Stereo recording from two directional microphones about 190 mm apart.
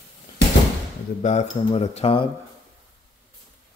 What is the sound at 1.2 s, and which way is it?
Mantra, 35° left (ahead or behind).